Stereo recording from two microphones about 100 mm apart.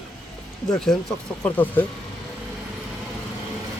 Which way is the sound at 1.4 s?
15° left (ahead or behind).